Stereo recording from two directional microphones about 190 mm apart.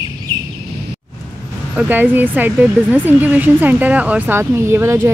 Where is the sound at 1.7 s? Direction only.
10° right (ahead or behind).